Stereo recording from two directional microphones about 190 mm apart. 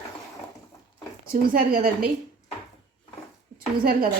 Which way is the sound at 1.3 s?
50° right (ahead or behind).